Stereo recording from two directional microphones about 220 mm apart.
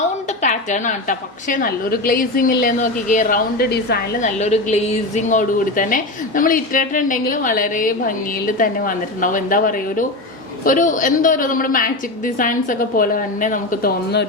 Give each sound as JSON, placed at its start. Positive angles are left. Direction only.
{"t": 0.4, "sound": "a woman's voice", "side_deg": 35}
{"t": 4.2, "sound": "a woman's voice", "side_deg": 30}